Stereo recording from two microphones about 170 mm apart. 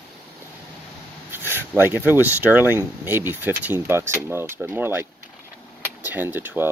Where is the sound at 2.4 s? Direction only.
10° right (ahead or behind).